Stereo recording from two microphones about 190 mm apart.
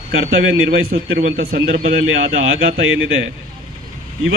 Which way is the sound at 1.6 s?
90° right.